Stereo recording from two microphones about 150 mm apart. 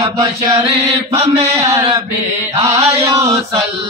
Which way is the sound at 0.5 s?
35° right (ahead or behind).